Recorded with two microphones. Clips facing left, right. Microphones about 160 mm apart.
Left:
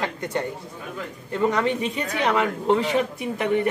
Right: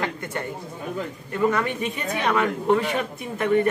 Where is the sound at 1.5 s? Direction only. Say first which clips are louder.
Left 2 dB; 20° left (ahead or behind).